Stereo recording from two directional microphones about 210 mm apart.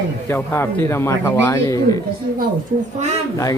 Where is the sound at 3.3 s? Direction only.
15° left (ahead or behind).